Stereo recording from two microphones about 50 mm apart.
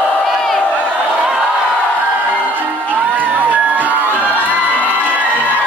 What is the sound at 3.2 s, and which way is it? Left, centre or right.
Crowd, right.